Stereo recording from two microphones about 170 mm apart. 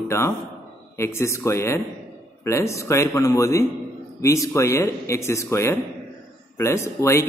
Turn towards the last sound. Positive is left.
turn(degrees=15)  # may be behind; listen again after turning